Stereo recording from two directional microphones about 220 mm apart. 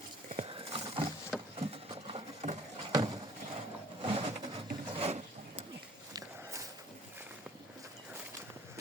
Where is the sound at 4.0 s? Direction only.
25° right (ahead or behind).